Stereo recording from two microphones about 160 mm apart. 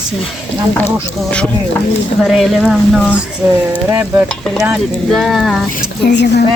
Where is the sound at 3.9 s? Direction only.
15° right (ahead or behind).